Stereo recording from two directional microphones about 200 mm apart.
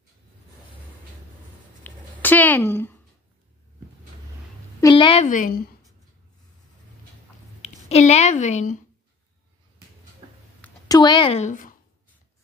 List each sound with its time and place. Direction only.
1.8 s a sound: 10° left (ahead or behind)
4.7 s a sound: 20° left (ahead or behind)
5.2 s a woman's voice: 40° left (ahead or behind)
7.6 s a woman's voice: 35° left (ahead or behind)
10.2 s tick-tock: 25° right (ahead or behind)
10.9 s speech: 20° left (ahead or behind); by 11.7 s 40° left (ahead or behind)